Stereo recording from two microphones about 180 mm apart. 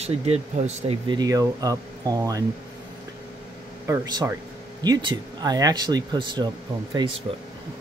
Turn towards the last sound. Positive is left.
turn(degrees=-25)  # may be behind; listen again after turning